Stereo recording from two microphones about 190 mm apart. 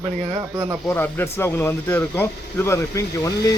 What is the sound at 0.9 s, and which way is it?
Speech, 10° left (ahead or behind).